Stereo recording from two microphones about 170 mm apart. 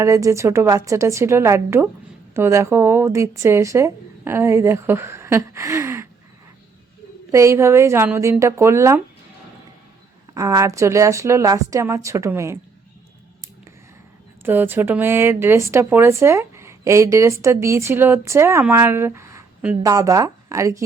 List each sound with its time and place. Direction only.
0.0 s speech: 15° right (ahead or behind)
7.3 s speech: 15° right (ahead or behind)
10.3 s speech: 20° right (ahead or behind)
14.4 s speech: 10° right (ahead or behind)